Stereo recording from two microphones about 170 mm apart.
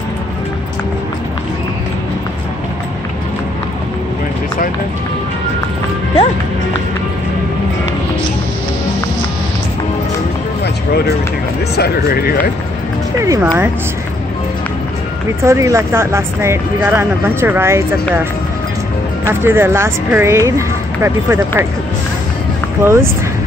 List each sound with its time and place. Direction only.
11.7 s speech: 70° left (ahead or behind)
13.2 s speech: 20° right (ahead or behind)
15.4 s speech: 15° right (ahead or behind)
19.2 s speech: 15° right (ahead or behind)
22.8 s speech: 15° right (ahead or behind)